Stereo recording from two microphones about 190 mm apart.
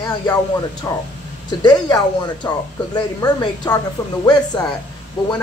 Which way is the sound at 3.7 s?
10° left (ahead or behind).